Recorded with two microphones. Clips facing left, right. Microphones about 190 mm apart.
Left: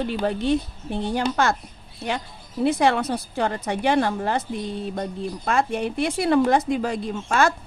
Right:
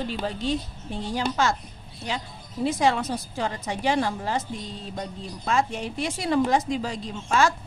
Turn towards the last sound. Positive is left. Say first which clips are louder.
# left 2 dB
turn(degrees=55)  # may be behind; listen again after turning